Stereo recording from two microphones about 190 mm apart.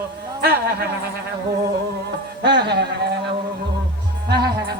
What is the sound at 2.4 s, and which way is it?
Speech, 65° right (ahead or behind).